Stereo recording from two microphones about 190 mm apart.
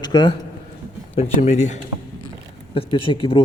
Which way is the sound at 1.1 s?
35° left (ahead or behind).